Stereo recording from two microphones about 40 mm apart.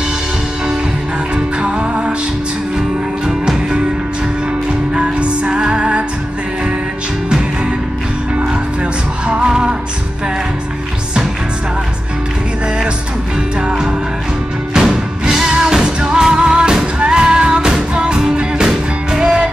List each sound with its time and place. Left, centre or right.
1.3 s music: right
3.3 s music: centre
4.9 s music: right
9.3 s music: right
14.9 s music: centre